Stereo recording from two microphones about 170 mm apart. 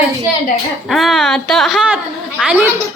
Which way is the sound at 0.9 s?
Centre (ahead or behind).